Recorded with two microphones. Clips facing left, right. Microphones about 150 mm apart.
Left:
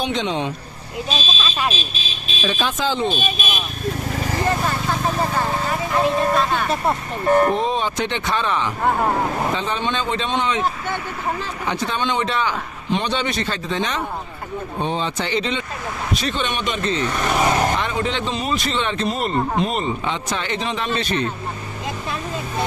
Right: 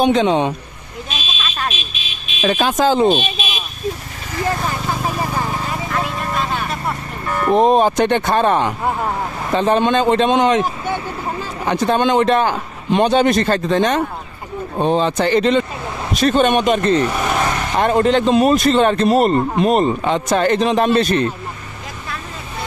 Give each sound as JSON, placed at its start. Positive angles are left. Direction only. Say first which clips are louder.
{"t": 0.0, "sound": "a man's voice", "louder": "right 8 dB", "side_deg": -50}
{"t": 1.1, "sound": "speech", "louder": "left 1 dB", "side_deg": 35}
{"t": 1.7, "sound": "vehicle", "louder": "left 2 dB", "side_deg": 35}
{"t": 2.4, "sound": "a man's voice", "louder": "right 7 dB", "side_deg": -50}
{"t": 3.3, "sound": "vehicle", "louder": "even", "side_deg": 50}
{"t": 4.9, "sound": "vehicle", "louder": "even", "side_deg": -10}
{"t": 5.9, "sound": "speech", "louder": "left 8 dB", "side_deg": 20}
{"t": 7.5, "sound": "a man's voice", "louder": "right 9 dB", "side_deg": -45}
{"t": 11.6, "sound": "a man's voice", "louder": "right 8 dB", "side_deg": -45}
{"t": 17.0, "sound": "speech", "louder": "right 3 dB", "side_deg": -5}
{"t": 17.7, "sound": "a man's voice", "louder": "right 9 dB", "side_deg": -50}